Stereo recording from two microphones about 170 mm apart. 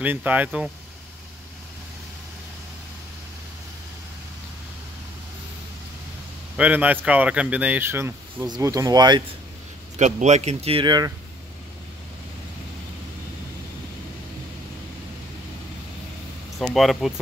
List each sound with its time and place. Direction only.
0.0 s speech: 10° right (ahead or behind)
6.5 s speech: 10° right (ahead or behind); by 9.2 s 25° right (ahead or behind)
9.9 s speech: 40° right (ahead or behind); by 11.1 s 25° right (ahead or behind)
16.5 s speech: centre (ahead or behind)